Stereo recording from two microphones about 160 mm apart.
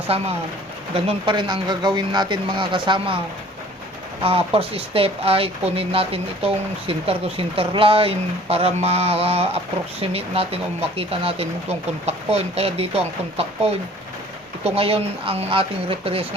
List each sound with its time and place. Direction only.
0.1 s speech: 40° right (ahead or behind)
4.2 s speech: 35° right (ahead or behind)